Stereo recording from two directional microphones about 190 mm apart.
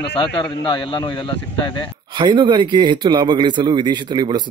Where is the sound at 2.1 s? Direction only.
25° right (ahead or behind).